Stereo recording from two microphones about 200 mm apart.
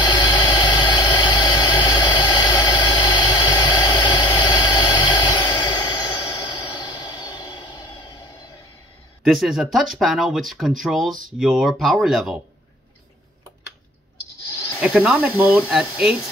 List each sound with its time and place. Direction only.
0.0 s vehicle: 20° left (ahead or behind)
9.2 s speech: centre (ahead or behind)
14.8 s speech: 5° right (ahead or behind)